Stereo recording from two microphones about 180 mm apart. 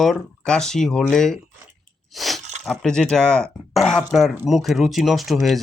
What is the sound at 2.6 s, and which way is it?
Speech, 5° left (ahead or behind).